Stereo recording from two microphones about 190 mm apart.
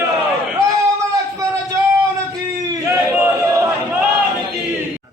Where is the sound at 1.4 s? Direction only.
15° right (ahead or behind).